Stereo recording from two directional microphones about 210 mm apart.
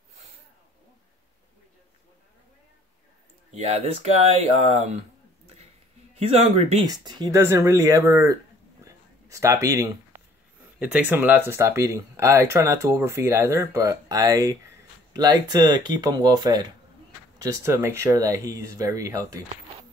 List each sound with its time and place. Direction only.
3.5 s speech: 30° right (ahead or behind)
6.1 s speech: 30° right (ahead or behind)
6.9 s speech: 20° right (ahead or behind)
8.8 s a sound: 15° right (ahead or behind)
10.8 s speech: 5° right (ahead or behind)